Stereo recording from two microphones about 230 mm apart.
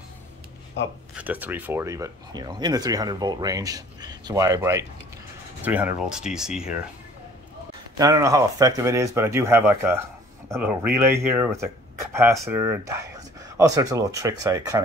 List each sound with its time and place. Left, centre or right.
1.1 s speech: centre
8.0 s speech: centre